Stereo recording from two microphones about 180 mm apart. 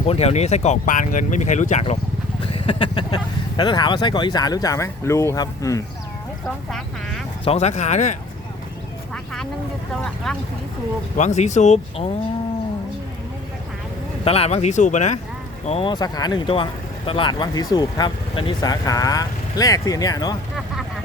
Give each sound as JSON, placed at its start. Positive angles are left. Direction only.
{"t": 0.1, "sound": "speech", "side_deg": 35}
{"t": 2.5, "sound": "speech", "side_deg": 30}
{"t": 6.7, "sound": "speech", "side_deg": 0}
{"t": 7.4, "sound": "speech", "side_deg": 35}
{"t": 9.1, "sound": "speech", "side_deg": 5}
{"t": 11.2, "sound": "speech", "side_deg": 40}
{"t": 14.3, "sound": "speech", "side_deg": 35}